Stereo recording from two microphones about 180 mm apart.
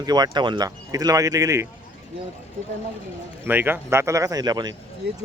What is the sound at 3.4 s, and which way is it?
Speech, 10° right (ahead or behind).